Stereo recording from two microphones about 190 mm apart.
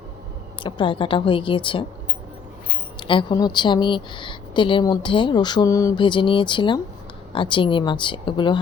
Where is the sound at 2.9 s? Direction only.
25° left (ahead or behind).